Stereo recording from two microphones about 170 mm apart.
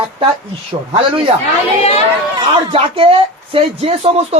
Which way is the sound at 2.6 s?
35° right (ahead or behind).